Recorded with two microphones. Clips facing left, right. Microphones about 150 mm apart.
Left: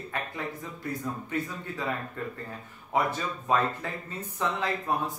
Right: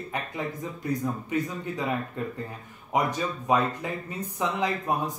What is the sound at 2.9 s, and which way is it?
Speech, 15° right (ahead or behind).